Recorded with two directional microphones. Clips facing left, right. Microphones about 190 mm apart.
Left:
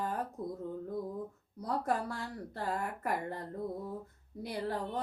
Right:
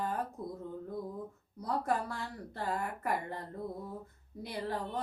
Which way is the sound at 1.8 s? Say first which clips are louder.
Even; 40° left (ahead or behind).